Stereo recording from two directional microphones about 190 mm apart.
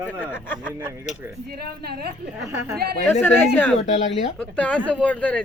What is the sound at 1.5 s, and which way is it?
Speech, 55° right (ahead or behind).